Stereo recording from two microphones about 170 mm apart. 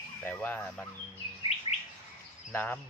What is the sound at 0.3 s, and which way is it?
Speech, 10° left (ahead or behind).